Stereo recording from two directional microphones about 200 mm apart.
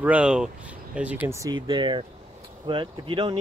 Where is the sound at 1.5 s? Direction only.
25° right (ahead or behind).